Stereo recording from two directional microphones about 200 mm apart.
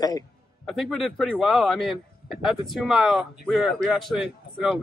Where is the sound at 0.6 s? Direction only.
Centre (ahead or behind).